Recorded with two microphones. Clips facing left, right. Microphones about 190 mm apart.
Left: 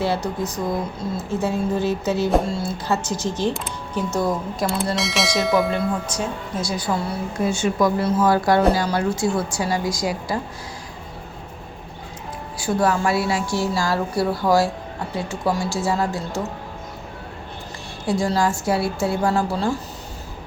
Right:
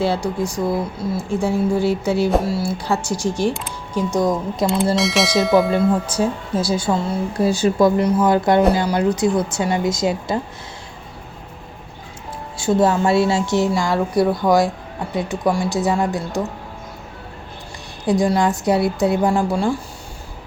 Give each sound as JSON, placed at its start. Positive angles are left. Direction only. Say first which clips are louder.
{"t": 0.0, "sound": "a woman's voice", "louder": "right 3 dB", "side_deg": -15}
{"t": 4.6, "sound": "speech", "louder": "right 6 dB", "side_deg": 0}
{"t": 6.1, "sound": "a woman's voice", "louder": "right 6 dB", "side_deg": -30}
{"t": 7.3, "sound": "speech", "louder": "right 4 dB", "side_deg": -35}
{"t": 8.0, "sound": "a woman's voice", "louder": "right 2 dB", "side_deg": -15}
{"t": 12.5, "sound": "a woman's voice", "louder": "right 4 dB", "side_deg": -25}
{"t": 18.0, "sound": "a woman's voice", "louder": "right 4 dB", "side_deg": -15}